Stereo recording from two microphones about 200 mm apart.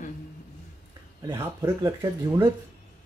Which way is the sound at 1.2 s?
10° right (ahead or behind).